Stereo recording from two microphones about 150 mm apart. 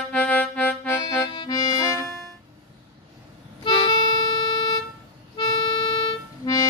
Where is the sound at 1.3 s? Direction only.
30° left (ahead or behind).